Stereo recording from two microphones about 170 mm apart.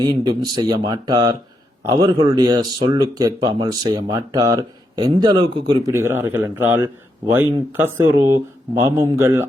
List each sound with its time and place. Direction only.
0.0 s speech: 25° right (ahead or behind)